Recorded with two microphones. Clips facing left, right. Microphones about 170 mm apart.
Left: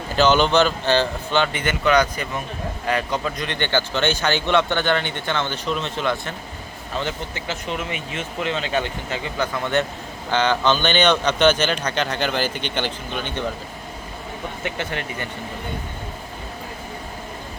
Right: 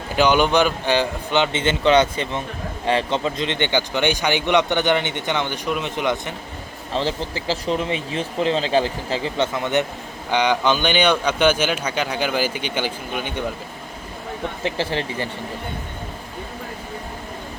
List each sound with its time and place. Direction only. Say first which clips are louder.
0.2 s speech: even; 10° right (ahead or behind)
6.9 s speech: right 4 dB; 30° right (ahead or behind)
9.6 s speech: right 1 dB; 20° right (ahead or behind)
14.6 s speech: right 4 dB; 30° right (ahead or behind)